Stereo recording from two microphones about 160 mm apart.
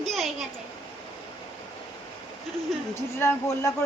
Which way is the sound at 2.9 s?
15° left (ahead or behind).